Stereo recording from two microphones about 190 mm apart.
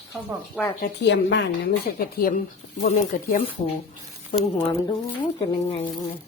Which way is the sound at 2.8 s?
40° left (ahead or behind).